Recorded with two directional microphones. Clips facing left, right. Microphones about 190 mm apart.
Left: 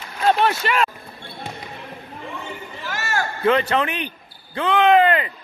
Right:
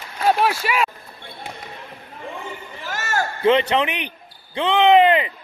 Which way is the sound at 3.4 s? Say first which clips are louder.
Right 2 dB; 20° right (ahead or behind).